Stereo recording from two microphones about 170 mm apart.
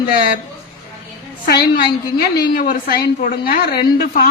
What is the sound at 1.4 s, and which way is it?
A man's voice, 70° left (ahead or behind).